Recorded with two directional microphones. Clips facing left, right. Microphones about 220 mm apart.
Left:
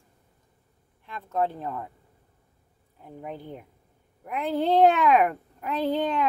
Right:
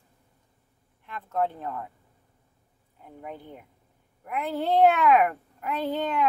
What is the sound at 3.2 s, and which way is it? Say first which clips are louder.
A woman's voice: left 3 dB; 20° left (ahead or behind).